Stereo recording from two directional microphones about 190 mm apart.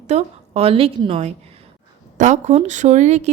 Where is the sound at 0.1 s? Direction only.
35° right (ahead or behind).